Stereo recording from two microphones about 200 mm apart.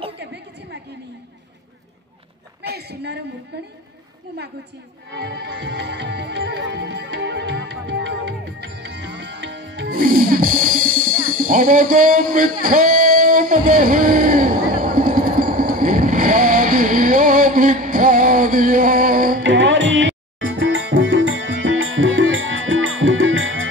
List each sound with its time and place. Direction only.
0.2 s a sound: 60° right (ahead or behind)
2.6 s a woman's voice: 55° right (ahead or behind)
5.1 s music: 55° right (ahead or behind)
9.8 s music: 45° right (ahead or behind)
19.4 s music: 65° right (ahead or behind)